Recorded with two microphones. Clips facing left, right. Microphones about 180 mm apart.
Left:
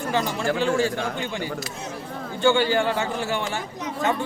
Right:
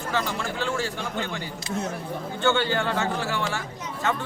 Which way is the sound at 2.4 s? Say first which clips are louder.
Left 4 dB; 15° left (ahead or behind).